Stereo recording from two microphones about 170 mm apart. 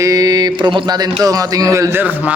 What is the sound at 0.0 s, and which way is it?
Mantra, 20° right (ahead or behind).